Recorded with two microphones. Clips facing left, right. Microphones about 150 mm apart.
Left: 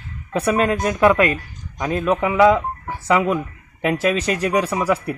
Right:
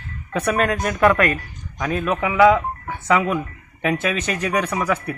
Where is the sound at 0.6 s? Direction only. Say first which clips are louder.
Left 1 dB; 25° left (ahead or behind).